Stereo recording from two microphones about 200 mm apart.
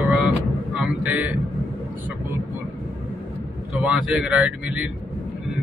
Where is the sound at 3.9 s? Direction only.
5° right (ahead or behind).